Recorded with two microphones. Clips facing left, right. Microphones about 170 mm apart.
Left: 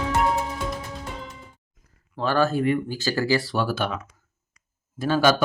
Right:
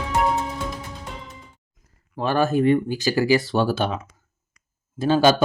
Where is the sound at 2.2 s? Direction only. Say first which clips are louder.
Right 2 dB; 20° right (ahead or behind).